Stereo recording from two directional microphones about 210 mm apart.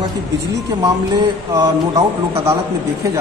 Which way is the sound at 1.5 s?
15° right (ahead or behind).